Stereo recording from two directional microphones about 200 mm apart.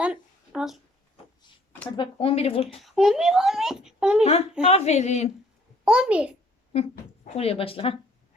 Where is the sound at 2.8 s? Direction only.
Centre (ahead or behind).